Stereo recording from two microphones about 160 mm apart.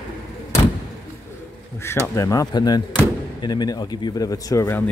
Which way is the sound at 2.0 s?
20° left (ahead or behind).